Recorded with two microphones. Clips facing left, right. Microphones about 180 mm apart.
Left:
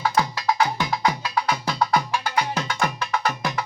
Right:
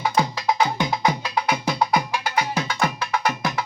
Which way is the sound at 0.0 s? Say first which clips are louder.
Even; 20° right (ahead or behind).